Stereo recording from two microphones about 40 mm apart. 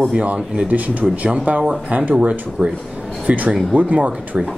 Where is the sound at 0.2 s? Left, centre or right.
Right.